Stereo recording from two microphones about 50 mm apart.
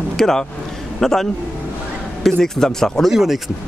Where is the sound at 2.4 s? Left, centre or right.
Centre.